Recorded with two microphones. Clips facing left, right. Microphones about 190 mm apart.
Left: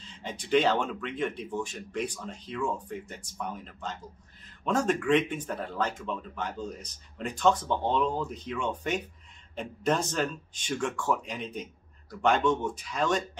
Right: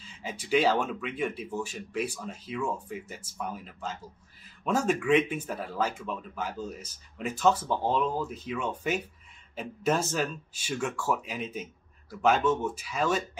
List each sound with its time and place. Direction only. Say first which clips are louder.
0.0 s speech: even; 5° right (ahead or behind)